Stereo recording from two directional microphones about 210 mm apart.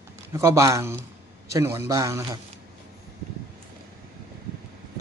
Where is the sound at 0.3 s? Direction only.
15° right (ahead or behind).